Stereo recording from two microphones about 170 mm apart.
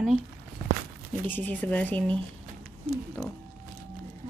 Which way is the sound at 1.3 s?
10° left (ahead or behind).